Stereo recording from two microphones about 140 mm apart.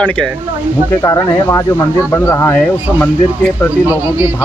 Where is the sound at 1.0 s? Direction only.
25° left (ahead or behind).